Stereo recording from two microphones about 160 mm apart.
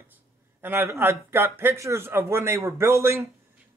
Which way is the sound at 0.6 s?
15° right (ahead or behind).